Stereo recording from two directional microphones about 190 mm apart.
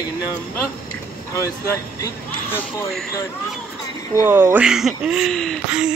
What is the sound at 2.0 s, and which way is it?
Speech, 15° left (ahead or behind).